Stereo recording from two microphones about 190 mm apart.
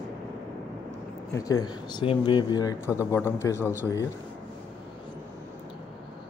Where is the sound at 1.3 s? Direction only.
20° left (ahead or behind).